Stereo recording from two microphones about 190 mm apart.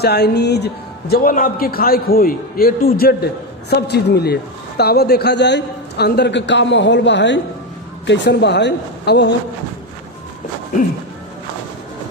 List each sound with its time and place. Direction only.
0.0 s a man's voice: 60° left (ahead or behind)